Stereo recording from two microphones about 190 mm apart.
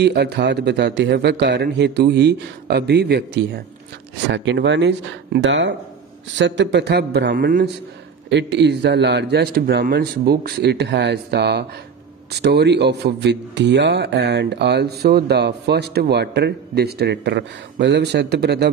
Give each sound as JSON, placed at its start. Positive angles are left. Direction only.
{"t": 0.0, "sound": "speech", "side_deg": -60}
{"t": 4.3, "sound": "speech", "side_deg": -70}
{"t": 8.3, "sound": "speech", "side_deg": -65}